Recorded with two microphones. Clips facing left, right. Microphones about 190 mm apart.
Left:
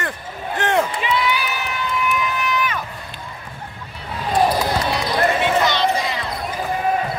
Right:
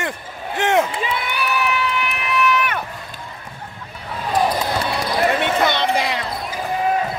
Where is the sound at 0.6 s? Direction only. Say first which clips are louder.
Right 2 dB; 20° right (ahead or behind).